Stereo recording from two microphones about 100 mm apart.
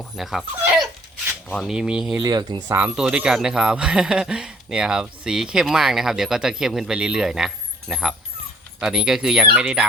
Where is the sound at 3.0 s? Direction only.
10° right (ahead or behind).